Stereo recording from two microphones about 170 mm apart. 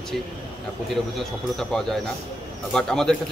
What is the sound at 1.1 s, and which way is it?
A man's voice, centre (ahead or behind).